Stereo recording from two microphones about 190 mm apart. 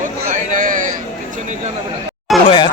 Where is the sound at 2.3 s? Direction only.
Centre (ahead or behind).